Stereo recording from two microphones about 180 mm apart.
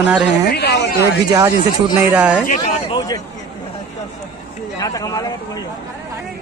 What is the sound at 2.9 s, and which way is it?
Speech, 20° left (ahead or behind).